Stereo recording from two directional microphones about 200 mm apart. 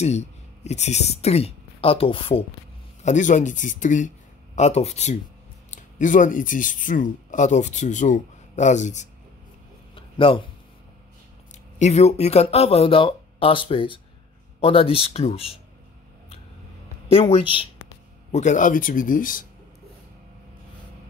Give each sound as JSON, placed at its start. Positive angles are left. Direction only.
{"t": 0.0, "sound": "speech", "side_deg": 35}
{"t": 3.0, "sound": "speech", "side_deg": 40}
{"t": 9.9, "sound": "a sound", "side_deg": 25}
{"t": 11.8, "sound": "speech", "side_deg": 35}
{"t": 17.1, "sound": "speech", "side_deg": 30}
{"t": 18.3, "sound": "speech", "side_deg": 35}